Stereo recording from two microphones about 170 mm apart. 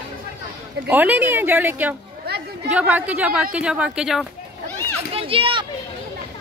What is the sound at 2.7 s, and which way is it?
A woman's voice, 10° right (ahead or behind).